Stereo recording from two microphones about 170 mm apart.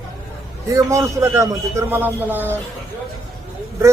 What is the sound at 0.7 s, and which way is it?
Speech, 20° right (ahead or behind).